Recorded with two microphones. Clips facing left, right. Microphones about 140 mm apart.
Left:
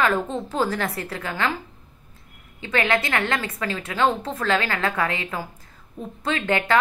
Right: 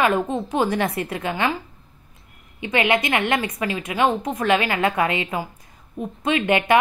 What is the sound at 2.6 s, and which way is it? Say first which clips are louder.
A woman's voice: right 2 dB; 20° right (ahead or behind).